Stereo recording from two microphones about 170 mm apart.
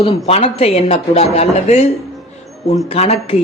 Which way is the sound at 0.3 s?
35° left (ahead or behind).